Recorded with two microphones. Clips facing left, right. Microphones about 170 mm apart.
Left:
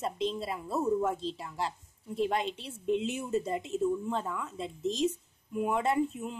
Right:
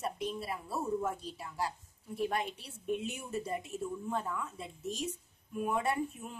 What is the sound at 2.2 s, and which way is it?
A woman's voice, 20° left (ahead or behind).